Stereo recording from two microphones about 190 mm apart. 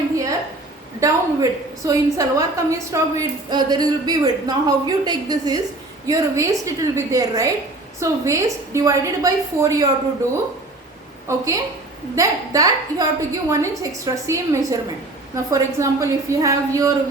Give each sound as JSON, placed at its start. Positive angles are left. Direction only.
{"t": 0.9, "sound": "a woman's voice", "side_deg": -15}
{"t": 11.3, "sound": "a woman's voice", "side_deg": -15}